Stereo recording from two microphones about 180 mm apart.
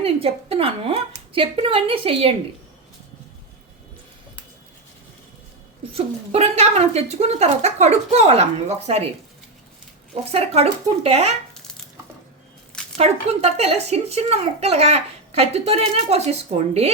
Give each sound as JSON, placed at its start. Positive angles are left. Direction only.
{"t": 0.0, "sound": "speech", "side_deg": -35}
{"t": 5.9, "sound": "speech", "side_deg": -35}
{"t": 10.3, "sound": "speech", "side_deg": -35}
{"t": 13.0, "sound": "speech", "side_deg": -35}